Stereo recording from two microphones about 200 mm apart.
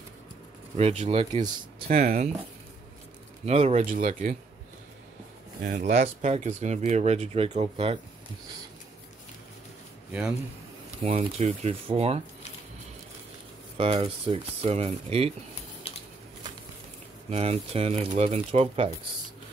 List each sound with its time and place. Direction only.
0.7 s speech: 30° right (ahead or behind)
1.9 s speech: 45° right (ahead or behind)
3.4 s speech: 30° right (ahead or behind)
5.6 s speech: 40° right (ahead or behind)
11.0 s speech: 30° right (ahead or behind)
13.7 s speech: 30° right (ahead or behind)
17.3 s speech: 30° right (ahead or behind)